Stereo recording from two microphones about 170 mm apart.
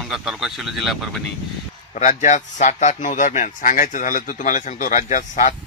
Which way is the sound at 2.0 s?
45° left (ahead or behind).